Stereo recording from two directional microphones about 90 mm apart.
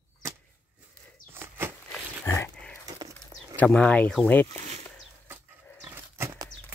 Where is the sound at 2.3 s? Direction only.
30° left (ahead or behind).